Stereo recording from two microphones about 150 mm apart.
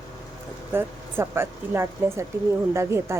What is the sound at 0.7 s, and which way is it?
A woman's voice, 15° right (ahead or behind).